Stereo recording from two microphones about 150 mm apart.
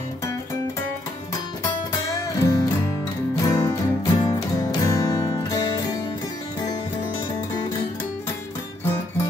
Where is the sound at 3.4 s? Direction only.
25° left (ahead or behind).